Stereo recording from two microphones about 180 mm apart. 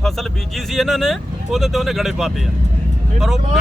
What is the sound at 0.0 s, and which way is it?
Speech, centre (ahead or behind).